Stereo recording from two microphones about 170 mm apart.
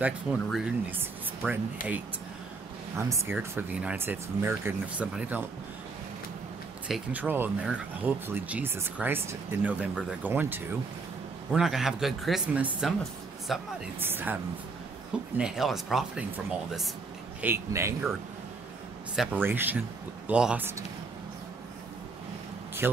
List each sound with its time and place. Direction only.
0.0 s speech: 5° right (ahead or behind)
3.0 s speech: 15° right (ahead or behind)
6.9 s speech: 10° right (ahead or behind)
13.9 s speech: 10° right (ahead or behind)
17.4 s speech: 15° right (ahead or behind)
19.1 s speech: 10° right (ahead or behind)